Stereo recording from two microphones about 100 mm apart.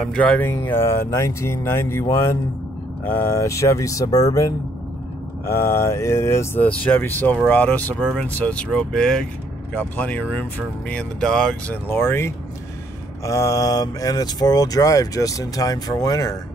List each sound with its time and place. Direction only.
0.0 s speech: 5° left (ahead or behind)
0.4 s speech: 20° left (ahead or behind)
5.5 s speech: 25° left (ahead or behind); by 11.8 s 5° left (ahead or behind)
11.9 s speech: 25° left (ahead or behind)